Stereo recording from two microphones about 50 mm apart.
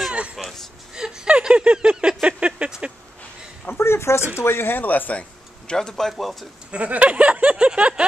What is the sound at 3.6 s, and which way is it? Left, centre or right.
Speech, left.